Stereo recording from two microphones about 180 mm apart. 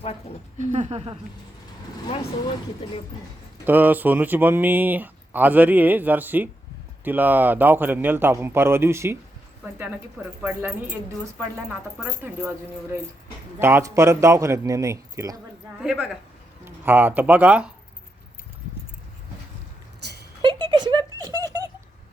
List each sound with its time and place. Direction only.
0.6 s speech: 40° right (ahead or behind)
3.7 s speech: 10° right (ahead or behind)
10.4 s speech: 10° right (ahead or behind)
11.9 s speech: 5° right (ahead or behind)
15.8 s a woman's voice: centre (ahead or behind)
20.0 s a sound: 65° right (ahead or behind)
20.4 s a sound: 25° right (ahead or behind)